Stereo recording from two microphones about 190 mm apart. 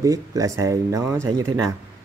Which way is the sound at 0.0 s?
20° right (ahead or behind).